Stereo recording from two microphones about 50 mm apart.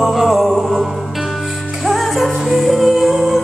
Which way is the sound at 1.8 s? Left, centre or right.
Centre.